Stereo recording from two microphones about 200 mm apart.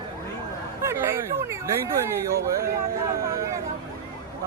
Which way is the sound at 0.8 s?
10° right (ahead or behind).